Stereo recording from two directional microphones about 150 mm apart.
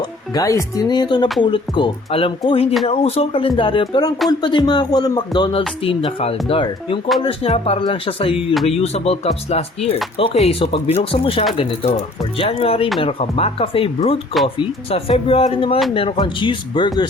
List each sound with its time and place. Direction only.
0.3 s speech: 25° left (ahead or behind)